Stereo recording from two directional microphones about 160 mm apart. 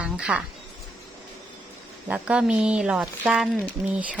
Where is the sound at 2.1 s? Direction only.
5° right (ahead or behind).